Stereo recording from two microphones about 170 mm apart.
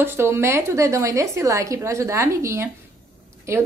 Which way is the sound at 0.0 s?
15° right (ahead or behind).